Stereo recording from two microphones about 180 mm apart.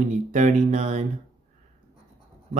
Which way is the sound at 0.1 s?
45° right (ahead or behind).